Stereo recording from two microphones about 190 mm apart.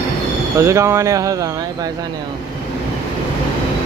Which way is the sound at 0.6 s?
15° right (ahead or behind).